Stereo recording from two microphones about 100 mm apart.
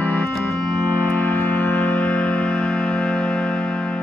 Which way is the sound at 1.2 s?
20° left (ahead or behind).